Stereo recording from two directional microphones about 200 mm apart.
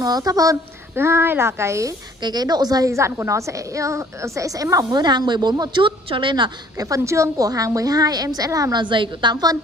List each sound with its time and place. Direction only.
0.0 s a woman's voice: 20° right (ahead or behind)